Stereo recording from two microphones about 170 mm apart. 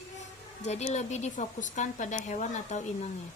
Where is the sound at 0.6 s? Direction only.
40° left (ahead or behind).